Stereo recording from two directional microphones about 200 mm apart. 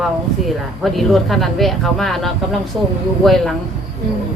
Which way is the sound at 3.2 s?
Centre (ahead or behind).